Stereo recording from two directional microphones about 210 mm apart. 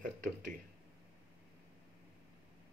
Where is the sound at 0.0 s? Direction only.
40° right (ahead or behind).